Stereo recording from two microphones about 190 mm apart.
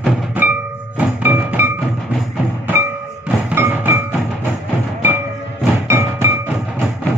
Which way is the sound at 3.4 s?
10° right (ahead or behind).